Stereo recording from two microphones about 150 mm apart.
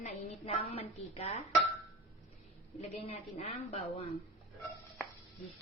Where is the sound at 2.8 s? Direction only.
45° left (ahead or behind).